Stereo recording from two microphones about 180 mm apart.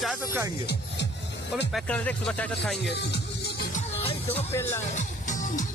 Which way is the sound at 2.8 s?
70° left (ahead or behind).